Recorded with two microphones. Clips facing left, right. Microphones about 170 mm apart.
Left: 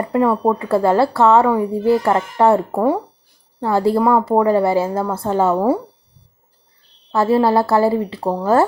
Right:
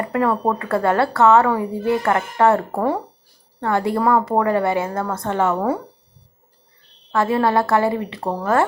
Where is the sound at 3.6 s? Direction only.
30° left (ahead or behind).